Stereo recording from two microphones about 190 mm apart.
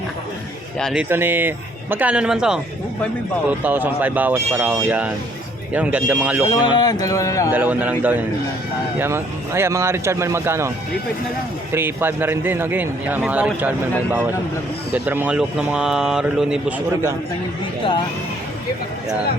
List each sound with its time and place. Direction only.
0.8 s speech: centre (ahead or behind)
1.0 s a man's voice: 10° right (ahead or behind)
3.6 s a man's voice: 10° right (ahead or behind)
6.5 s speech: 25° left (ahead or behind)
7.5 s a man's voice: 10° right (ahead or behind)
11.7 s a man's voice: 10° right (ahead or behind)
14.9 s speech: 10° right (ahead or behind)